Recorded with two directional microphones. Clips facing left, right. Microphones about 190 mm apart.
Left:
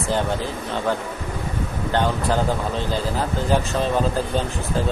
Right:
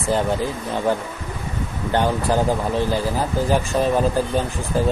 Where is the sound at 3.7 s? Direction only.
15° right (ahead or behind).